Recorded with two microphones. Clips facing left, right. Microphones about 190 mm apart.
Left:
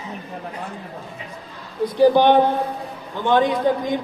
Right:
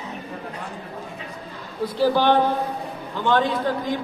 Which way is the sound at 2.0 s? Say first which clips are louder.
Left 5 dB; 20° left (ahead or behind).